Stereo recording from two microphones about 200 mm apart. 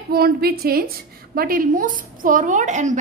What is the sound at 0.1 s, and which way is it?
A woman's voice, 50° right (ahead or behind).